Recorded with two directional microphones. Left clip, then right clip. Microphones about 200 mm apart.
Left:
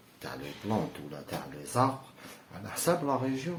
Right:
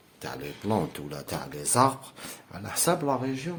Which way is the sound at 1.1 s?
55° right (ahead or behind).